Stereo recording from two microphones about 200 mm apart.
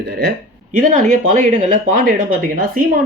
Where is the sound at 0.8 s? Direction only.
40° right (ahead or behind).